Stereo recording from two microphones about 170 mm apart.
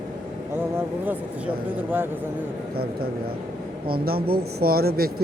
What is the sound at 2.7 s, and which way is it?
Speech, 65° right (ahead or behind).